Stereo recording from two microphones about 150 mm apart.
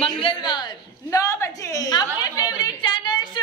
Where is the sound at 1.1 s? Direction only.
20° left (ahead or behind).